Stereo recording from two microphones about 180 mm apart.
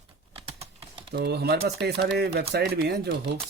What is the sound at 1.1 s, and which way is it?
Speech, 65° right (ahead or behind).